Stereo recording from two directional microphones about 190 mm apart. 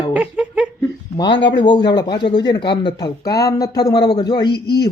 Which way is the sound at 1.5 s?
25° left (ahead or behind).